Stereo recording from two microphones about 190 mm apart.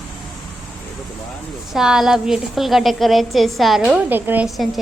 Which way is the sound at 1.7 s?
5° right (ahead or behind).